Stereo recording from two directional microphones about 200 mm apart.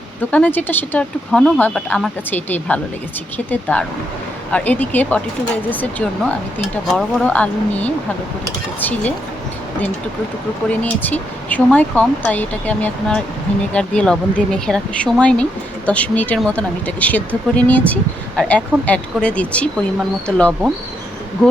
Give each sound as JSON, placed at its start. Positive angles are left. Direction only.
{"t": 0.3, "sound": "speech", "side_deg": 10}
{"t": 10.7, "sound": "speech", "side_deg": 5}